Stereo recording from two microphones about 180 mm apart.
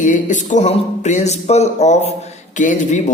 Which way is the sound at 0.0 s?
45° left (ahead or behind).